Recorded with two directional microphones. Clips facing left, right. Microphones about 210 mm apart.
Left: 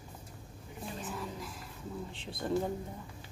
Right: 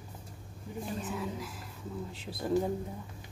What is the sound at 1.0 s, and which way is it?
Speech, centre (ahead or behind).